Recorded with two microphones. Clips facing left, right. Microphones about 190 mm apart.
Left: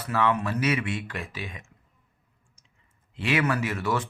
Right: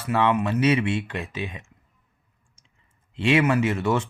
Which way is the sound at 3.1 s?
25° right (ahead or behind).